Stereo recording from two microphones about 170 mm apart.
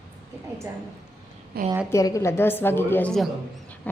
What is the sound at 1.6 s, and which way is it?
Speech, 65° right (ahead or behind).